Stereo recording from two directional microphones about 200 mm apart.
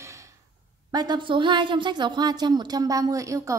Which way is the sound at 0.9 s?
20° right (ahead or behind).